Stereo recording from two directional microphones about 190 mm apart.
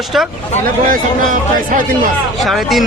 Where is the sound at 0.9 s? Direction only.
45° right (ahead or behind).